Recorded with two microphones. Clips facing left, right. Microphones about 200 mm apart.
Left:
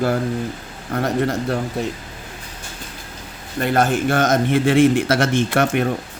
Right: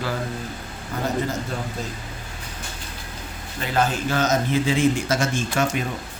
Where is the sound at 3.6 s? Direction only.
60° left (ahead or behind).